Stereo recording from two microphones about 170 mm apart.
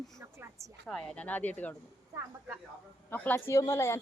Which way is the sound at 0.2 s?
15° right (ahead or behind).